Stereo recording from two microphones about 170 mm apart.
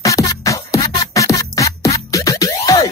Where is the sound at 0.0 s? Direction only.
20° left (ahead or behind).